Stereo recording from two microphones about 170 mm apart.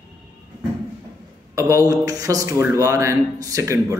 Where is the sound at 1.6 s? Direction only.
20° right (ahead or behind).